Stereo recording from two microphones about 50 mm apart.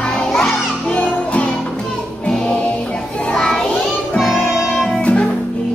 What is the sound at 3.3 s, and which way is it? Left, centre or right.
Children playing, centre.